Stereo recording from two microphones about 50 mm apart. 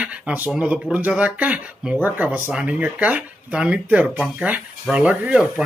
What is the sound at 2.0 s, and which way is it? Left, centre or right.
Speech, right.